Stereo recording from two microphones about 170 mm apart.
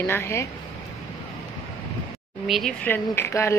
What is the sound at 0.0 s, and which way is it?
Speech, 15° left (ahead or behind).